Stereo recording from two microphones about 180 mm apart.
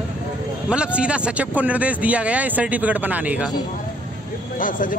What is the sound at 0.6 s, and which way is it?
A man's voice, 5° right (ahead or behind).